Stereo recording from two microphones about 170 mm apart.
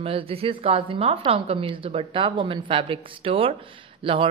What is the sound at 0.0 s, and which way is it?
Speech, 35° right (ahead or behind).